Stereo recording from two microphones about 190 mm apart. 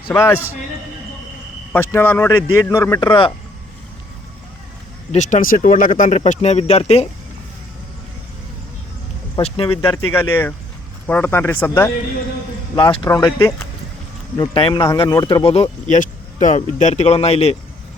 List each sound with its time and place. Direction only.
0.1 s speech: 15° left (ahead or behind)
1.7 s speech: 10° left (ahead or behind); by 3.3 s 25° left (ahead or behind)
5.1 s speech: 40° left (ahead or behind)
9.4 s speech: 25° left (ahead or behind)
10.1 s speech: 10° left (ahead or behind)
12.7 s speech: 25° left (ahead or behind)